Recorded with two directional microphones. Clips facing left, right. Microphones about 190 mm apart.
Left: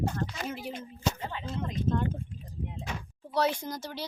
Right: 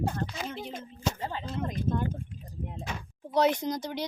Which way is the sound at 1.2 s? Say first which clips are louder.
Right 2 dB; 35° right (ahead or behind).